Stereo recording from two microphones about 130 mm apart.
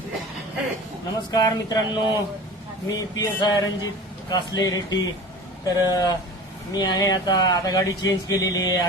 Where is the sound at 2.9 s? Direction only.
30° left (ahead or behind).